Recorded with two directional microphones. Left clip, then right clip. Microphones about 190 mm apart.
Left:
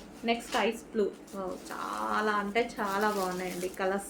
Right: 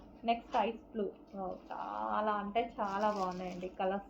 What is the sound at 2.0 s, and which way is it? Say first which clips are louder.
Speech: left 5 dB; 35° left (ahead or behind).